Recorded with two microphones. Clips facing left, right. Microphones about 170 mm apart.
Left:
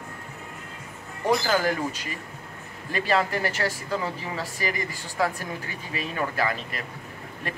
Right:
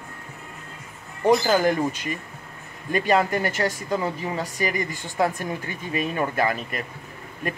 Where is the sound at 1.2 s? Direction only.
20° right (ahead or behind).